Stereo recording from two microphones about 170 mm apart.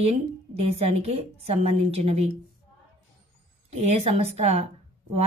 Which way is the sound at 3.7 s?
40° right (ahead or behind).